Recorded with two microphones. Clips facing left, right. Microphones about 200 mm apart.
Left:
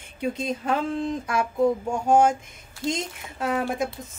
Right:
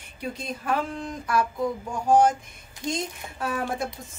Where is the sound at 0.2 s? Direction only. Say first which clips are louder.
Left 6 dB; 25° left (ahead or behind).